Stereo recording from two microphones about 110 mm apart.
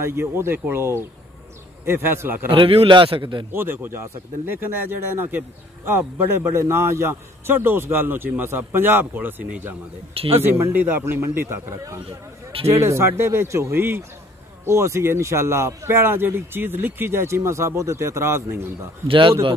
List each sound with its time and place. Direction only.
0.0 s a man's voice: 20° right (ahead or behind)
2.5 s a man's voice: 55° right (ahead or behind)
3.5 s a man's voice: 20° right (ahead or behind)
10.1 s a man's voice: 60° right (ahead or behind)
10.4 s a man's voice: 20° right (ahead or behind)
19.0 s a man's voice: 50° right (ahead or behind)